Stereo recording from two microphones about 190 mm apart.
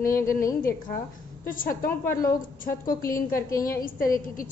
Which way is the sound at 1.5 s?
45° left (ahead or behind).